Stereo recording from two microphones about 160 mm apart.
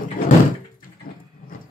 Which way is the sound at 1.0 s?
70° left (ahead or behind).